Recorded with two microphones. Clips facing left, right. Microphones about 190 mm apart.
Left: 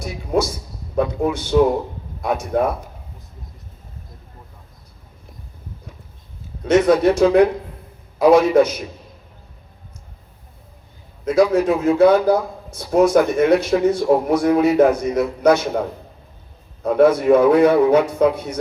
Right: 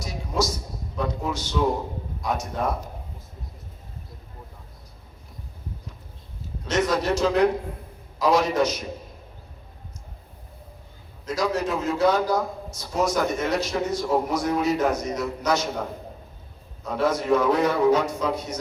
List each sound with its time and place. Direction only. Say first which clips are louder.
0.0 s a man's voice: left 6 dB; 55° left (ahead or behind)
6.7 s a man's voice: left 10 dB; 60° left (ahead or behind)
8.2 s a man's voice: left 8 dB; 55° left (ahead or behind)
11.3 s a man's voice: left 10 dB; 55° left (ahead or behind)
16.8 s a man's voice: left 10 dB; 55° left (ahead or behind)